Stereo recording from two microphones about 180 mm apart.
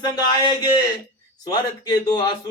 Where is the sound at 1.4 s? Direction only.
20° left (ahead or behind).